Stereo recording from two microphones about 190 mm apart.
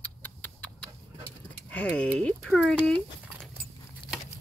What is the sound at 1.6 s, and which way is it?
Speech, 5° left (ahead or behind).